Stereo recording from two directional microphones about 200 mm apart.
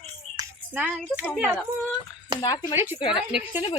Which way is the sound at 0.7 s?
10° right (ahead or behind).